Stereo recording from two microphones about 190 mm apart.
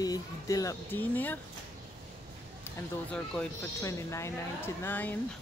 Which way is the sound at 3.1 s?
5° left (ahead or behind).